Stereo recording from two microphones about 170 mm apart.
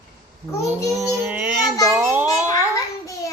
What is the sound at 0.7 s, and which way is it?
Speech, 15° right (ahead or behind).